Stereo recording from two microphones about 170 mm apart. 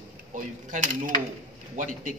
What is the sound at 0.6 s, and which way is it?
Speech, 50° right (ahead or behind).